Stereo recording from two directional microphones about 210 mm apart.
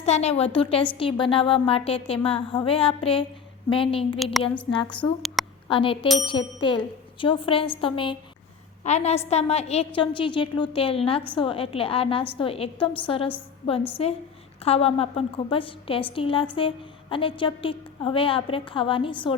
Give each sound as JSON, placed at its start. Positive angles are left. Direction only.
{"t": 0.0, "sound": "a woman's voice", "side_deg": 30}